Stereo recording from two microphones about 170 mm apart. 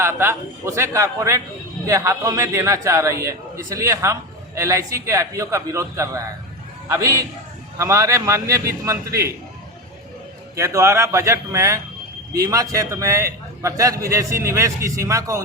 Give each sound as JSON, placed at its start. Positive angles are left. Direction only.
{"t": 0.0, "sound": "a man's voice", "side_deg": -15}
{"t": 10.5, "sound": "a man's voice", "side_deg": -15}